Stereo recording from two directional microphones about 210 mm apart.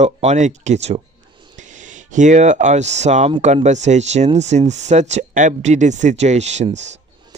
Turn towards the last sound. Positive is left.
turn(degrees=-35)  # may be behind; listen again after turning